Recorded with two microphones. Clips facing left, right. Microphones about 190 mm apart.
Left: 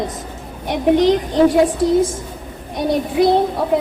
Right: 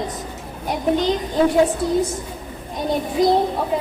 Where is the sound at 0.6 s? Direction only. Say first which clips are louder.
Left 6 dB; 75° left (ahead or behind).